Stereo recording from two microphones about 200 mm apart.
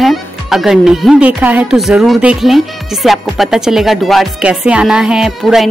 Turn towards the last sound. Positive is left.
turn(degrees=0)  # may be behind; listen again after turning